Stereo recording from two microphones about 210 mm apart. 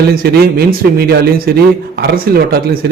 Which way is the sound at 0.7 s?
45° right (ahead or behind).